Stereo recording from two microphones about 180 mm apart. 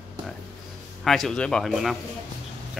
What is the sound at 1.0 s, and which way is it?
Speech, centre (ahead or behind).